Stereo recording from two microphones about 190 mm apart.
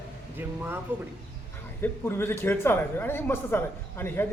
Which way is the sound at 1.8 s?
10° left (ahead or behind).